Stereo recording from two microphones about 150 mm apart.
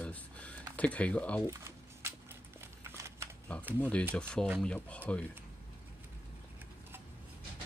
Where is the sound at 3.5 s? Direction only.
10° left (ahead or behind).